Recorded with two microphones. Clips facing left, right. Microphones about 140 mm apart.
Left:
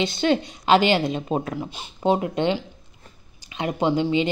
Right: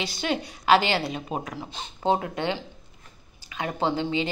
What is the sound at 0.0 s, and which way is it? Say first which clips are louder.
A woman's voice: left 7 dB; 25° left (ahead or behind).